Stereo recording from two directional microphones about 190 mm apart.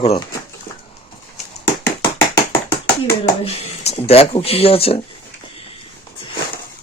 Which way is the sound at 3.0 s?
30° left (ahead or behind).